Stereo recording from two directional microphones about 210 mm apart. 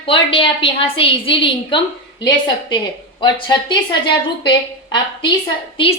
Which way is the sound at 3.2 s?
20° left (ahead or behind).